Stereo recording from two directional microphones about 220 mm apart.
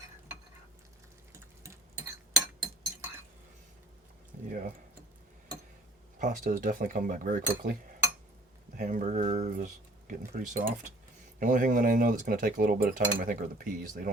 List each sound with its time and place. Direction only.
4.4 s speech: 35° right (ahead or behind)
6.1 s speech: 40° right (ahead or behind)
8.8 s speech: 35° right (ahead or behind)